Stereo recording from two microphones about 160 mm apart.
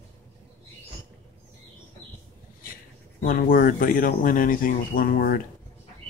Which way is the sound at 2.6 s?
65° left (ahead or behind).